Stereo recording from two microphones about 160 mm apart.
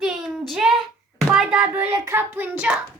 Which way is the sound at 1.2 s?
5° right (ahead or behind).